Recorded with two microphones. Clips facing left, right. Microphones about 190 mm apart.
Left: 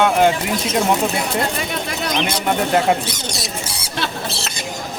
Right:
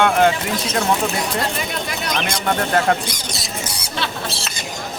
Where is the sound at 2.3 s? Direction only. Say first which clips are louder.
Left 1 dB; 10° left (ahead or behind).